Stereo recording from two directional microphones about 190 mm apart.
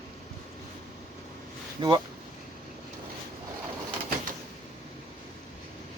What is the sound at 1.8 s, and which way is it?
Speech, 25° right (ahead or behind).